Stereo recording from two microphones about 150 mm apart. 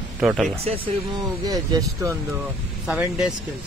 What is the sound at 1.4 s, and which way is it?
Speech, 25° right (ahead or behind).